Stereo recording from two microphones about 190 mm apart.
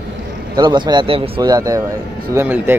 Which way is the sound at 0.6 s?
20° right (ahead or behind).